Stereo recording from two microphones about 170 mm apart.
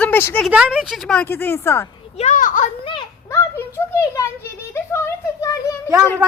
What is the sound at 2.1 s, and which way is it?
Speech, 45° left (ahead or behind).